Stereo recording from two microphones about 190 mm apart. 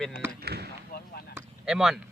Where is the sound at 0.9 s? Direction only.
55° left (ahead or behind).